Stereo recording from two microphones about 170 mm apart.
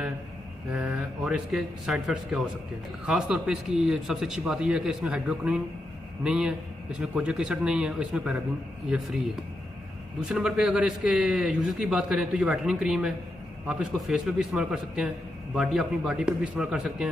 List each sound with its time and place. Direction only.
0.7 s a man's voice: 5° right (ahead or behind)
10.2 s a man's voice: 5° right (ahead or behind)